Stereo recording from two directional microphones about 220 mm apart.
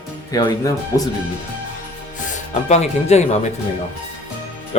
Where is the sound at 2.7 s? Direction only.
30° left (ahead or behind).